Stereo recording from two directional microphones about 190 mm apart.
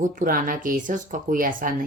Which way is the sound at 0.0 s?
45° right (ahead or behind).